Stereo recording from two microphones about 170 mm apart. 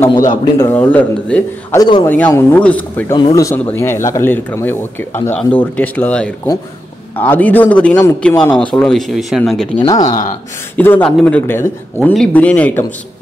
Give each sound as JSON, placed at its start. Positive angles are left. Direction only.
{"t": 0.6, "sound": "speech", "side_deg": 10}
{"t": 1.8, "sound": "speech", "side_deg": 25}
{"t": 2.0, "sound": "speech", "side_deg": 10}
{"t": 9.8, "sound": "speech", "side_deg": 25}
{"t": 10.0, "sound": "speech", "side_deg": 50}
{"t": 10.8, "sound": "speech", "side_deg": 10}